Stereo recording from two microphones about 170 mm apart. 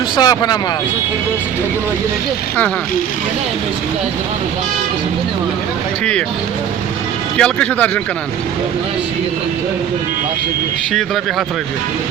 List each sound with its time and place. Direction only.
0.2 s speech: 25° left (ahead or behind)
7.3 s a man's voice: 5° left (ahead or behind)
10.9 s speech: centre (ahead or behind)